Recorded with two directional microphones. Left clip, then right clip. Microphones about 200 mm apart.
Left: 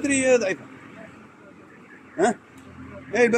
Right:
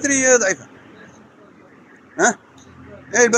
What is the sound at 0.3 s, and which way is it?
Speech, 5° right (ahead or behind).